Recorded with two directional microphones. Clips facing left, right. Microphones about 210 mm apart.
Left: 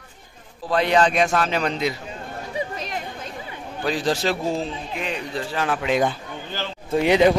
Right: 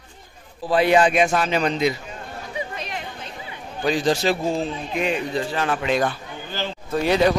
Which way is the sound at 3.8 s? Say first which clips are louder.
Right 2 dB; centre (ahead or behind).